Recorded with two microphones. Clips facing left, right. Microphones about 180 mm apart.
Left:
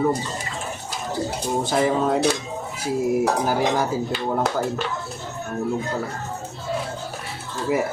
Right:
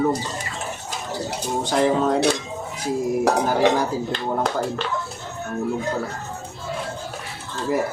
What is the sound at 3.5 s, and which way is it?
Speech, 5° left (ahead or behind).